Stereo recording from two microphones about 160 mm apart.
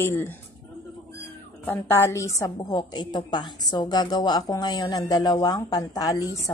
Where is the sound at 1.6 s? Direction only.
15° left (ahead or behind).